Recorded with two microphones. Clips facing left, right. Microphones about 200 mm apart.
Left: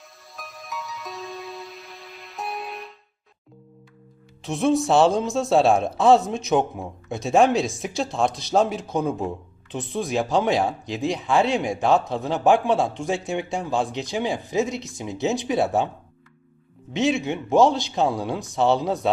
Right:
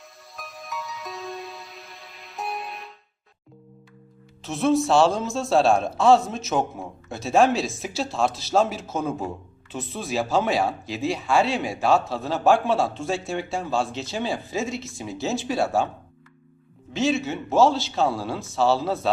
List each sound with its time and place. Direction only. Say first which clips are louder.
0.3 s music: even; centre (ahead or behind)
4.4 s speech: even; centre (ahead or behind)
8.8 s speech: left 3 dB; 15° left (ahead or behind)
16.9 s speech: left 1 dB; 15° left (ahead or behind)